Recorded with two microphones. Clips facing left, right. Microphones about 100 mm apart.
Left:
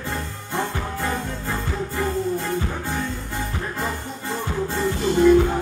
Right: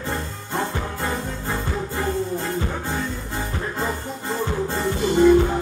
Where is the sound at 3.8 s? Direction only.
15° right (ahead or behind).